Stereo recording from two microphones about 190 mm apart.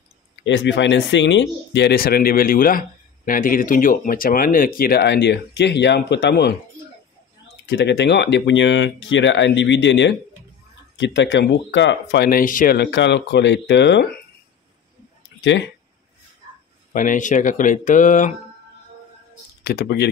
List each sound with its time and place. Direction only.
0.4 s speech: 70° left (ahead or behind)
7.6 s speech: 65° left (ahead or behind)
16.9 s speech: 45° left (ahead or behind)
19.6 s speech: 55° left (ahead or behind)